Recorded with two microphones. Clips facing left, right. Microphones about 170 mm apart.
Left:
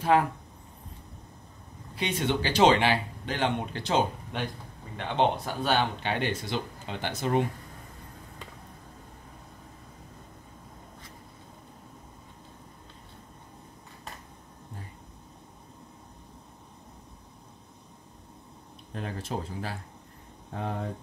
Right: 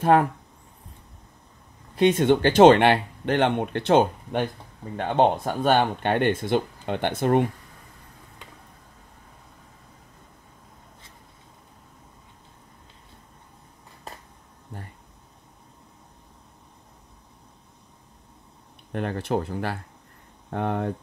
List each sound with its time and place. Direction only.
2.0 s speech: 50° right (ahead or behind)
18.9 s speech: 65° right (ahead or behind)